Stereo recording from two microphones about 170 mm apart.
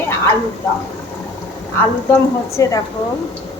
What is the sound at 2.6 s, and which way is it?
Speech, 20° left (ahead or behind).